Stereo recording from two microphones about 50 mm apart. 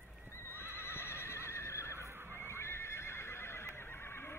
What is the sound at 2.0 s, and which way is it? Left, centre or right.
Neigh, right.